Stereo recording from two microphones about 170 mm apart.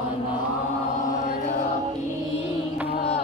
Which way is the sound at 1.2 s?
45° left (ahead or behind).